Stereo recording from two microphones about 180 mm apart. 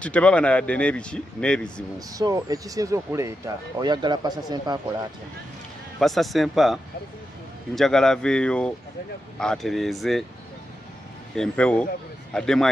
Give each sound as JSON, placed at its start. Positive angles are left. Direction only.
{"t": 0.0, "sound": "speech", "side_deg": 5}
{"t": 2.0, "sound": "speech", "side_deg": -20}
{"t": 5.9, "sound": "speech", "side_deg": 0}
{"t": 11.3, "sound": "speech", "side_deg": 5}